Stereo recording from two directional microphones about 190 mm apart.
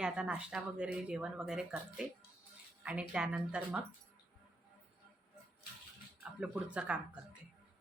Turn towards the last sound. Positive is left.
turn(degrees=-5)  # may be behind; listen again after turning